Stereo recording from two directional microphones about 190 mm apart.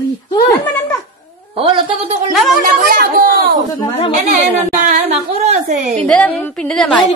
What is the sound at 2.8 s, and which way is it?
Speech, 45° right (ahead or behind).